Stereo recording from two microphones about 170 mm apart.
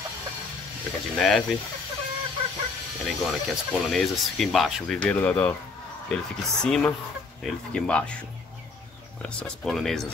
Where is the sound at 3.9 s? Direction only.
Centre (ahead or behind).